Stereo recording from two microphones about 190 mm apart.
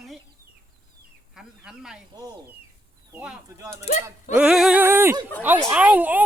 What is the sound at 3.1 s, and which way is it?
Speech, 5° right (ahead or behind).